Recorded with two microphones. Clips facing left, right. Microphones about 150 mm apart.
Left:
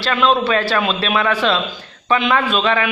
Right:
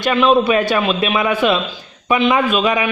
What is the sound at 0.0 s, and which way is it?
A man's voice, 10° right (ahead or behind).